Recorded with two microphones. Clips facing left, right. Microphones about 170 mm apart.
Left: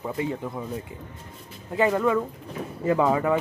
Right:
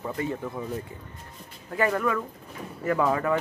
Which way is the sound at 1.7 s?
20° left (ahead or behind).